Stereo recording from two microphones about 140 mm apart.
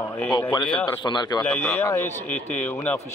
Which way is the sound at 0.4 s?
30° left (ahead or behind).